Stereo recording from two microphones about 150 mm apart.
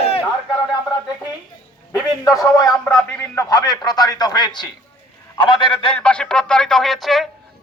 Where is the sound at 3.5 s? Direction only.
25° left (ahead or behind).